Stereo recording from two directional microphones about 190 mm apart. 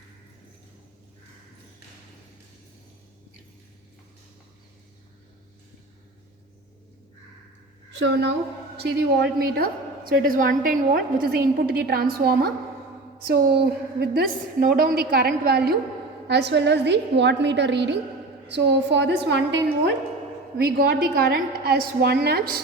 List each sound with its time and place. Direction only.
7.9 s a woman's voice: 70° right (ahead or behind)
20.6 s a woman's voice: 55° right (ahead or behind)